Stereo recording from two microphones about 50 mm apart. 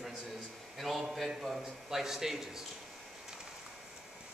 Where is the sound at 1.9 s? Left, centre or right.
Centre.